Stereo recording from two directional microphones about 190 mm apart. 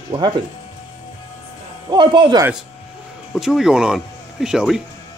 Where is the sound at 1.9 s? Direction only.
25° right (ahead or behind).